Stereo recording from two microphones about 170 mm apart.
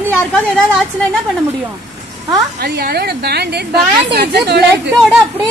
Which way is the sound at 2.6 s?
65° right (ahead or behind).